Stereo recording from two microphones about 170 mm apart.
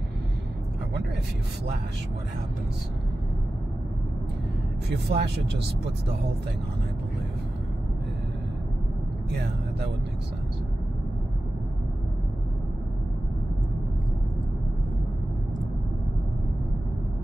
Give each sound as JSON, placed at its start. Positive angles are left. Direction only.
{"t": 4.8, "sound": "speech", "side_deg": -75}